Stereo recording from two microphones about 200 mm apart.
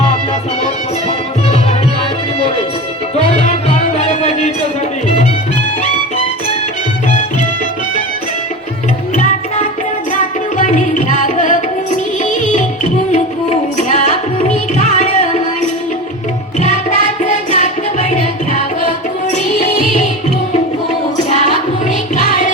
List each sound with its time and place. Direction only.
10.2 s music: 40° left (ahead or behind)
17.2 s music: 35° left (ahead or behind)
22.1 s music: 35° left (ahead or behind)